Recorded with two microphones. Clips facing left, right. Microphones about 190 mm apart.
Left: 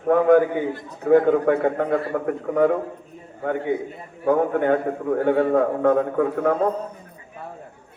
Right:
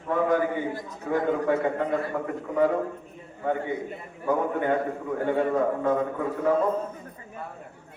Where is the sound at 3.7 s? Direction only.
55° left (ahead or behind).